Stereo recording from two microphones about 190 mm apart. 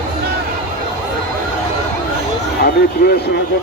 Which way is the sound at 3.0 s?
55° left (ahead or behind).